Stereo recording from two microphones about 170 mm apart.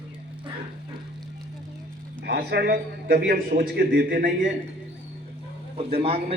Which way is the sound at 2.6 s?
70° right (ahead or behind).